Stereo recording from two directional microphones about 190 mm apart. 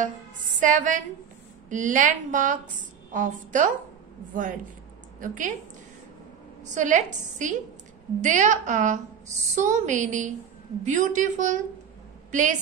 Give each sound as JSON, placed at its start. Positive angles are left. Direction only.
{"t": 0.0, "sound": "music", "side_deg": -45}
{"t": 1.7, "sound": "a woman's voice", "side_deg": -40}
{"t": 6.6, "sound": "a woman's voice", "side_deg": -40}